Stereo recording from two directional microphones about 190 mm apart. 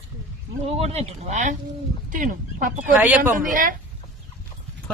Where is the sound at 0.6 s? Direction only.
30° right (ahead or behind).